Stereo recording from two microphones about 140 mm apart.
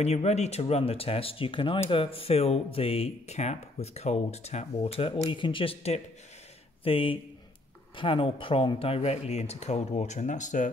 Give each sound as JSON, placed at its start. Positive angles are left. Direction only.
{"t": 0.0, "sound": "speech", "side_deg": 50}